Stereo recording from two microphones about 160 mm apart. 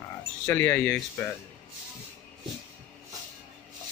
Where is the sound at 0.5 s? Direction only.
10° left (ahead or behind).